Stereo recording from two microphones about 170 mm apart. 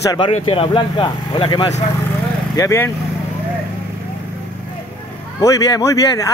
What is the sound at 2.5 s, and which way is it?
Speech, 20° left (ahead or behind).